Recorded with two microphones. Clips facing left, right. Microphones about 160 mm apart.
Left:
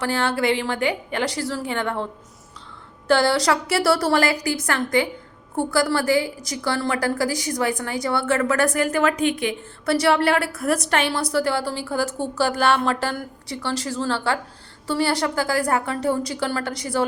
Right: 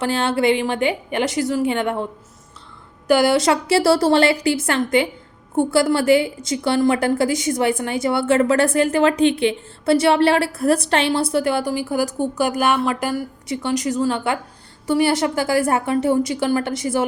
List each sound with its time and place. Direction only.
0.0 s a woman's voice: 25° right (ahead or behind)
3.1 s a woman's voice: 20° right (ahead or behind)